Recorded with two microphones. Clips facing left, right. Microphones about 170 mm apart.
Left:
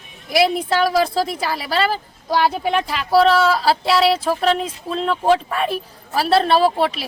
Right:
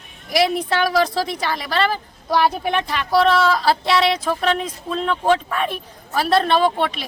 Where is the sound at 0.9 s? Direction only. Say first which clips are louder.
Left 1 dB; 5° left (ahead or behind).